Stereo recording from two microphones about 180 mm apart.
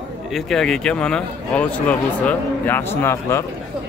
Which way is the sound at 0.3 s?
Centre (ahead or behind).